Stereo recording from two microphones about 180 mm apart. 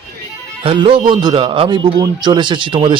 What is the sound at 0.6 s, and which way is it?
A man's voice, 30° right (ahead or behind).